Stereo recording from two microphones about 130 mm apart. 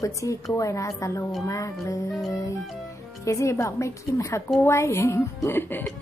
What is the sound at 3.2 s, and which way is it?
Speech, 25° left (ahead or behind).